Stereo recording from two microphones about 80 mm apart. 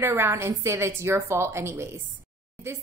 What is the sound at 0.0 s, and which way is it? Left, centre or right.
Speech, right.